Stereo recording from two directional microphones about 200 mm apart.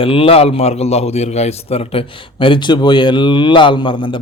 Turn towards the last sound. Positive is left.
turn(degrees=25)  # may be behind; listen again after turning